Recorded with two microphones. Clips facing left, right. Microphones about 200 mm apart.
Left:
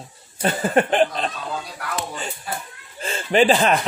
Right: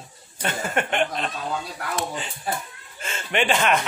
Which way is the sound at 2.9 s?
35° left (ahead or behind).